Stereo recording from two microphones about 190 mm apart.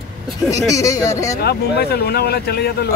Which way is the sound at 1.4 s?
55° left (ahead or behind).